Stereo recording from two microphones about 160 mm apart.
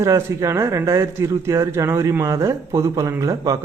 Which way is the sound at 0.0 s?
20° right (ahead or behind).